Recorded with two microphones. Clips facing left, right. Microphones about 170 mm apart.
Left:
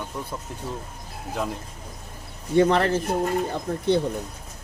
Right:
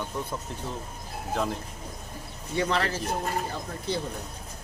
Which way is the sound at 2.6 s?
50° left (ahead or behind).